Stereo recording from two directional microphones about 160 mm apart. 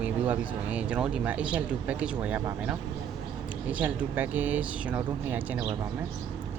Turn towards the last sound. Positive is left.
turn(degrees=-10)  # may be behind; listen again after turning